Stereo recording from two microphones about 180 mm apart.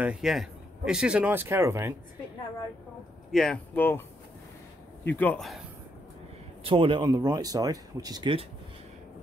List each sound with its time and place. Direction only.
0.0 s speech: 5° right (ahead or behind)
3.3 s speech: 5° left (ahead or behind)
5.1 s speech: 10° left (ahead or behind)
6.6 s speech: 30° right (ahead or behind)